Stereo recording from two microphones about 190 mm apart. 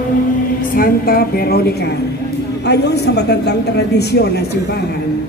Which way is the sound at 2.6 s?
60° left (ahead or behind).